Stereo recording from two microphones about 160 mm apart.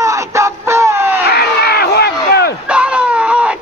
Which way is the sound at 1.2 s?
85° left.